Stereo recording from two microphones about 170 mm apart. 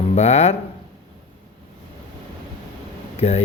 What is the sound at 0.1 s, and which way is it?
Speech, 40° left (ahead or behind).